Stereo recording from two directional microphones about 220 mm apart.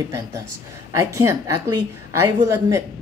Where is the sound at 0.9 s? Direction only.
15° right (ahead or behind).